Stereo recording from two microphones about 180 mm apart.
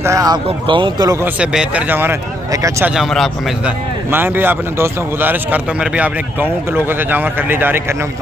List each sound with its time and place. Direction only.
0.0 s speech: 20° right (ahead or behind)
1.2 s speech: 5° right (ahead or behind)
2.9 s speech: centre (ahead or behind)
4.1 s speech: 10° right (ahead or behind)